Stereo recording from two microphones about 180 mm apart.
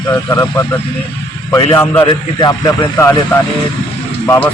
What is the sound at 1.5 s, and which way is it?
A man's voice, 15° left (ahead or behind).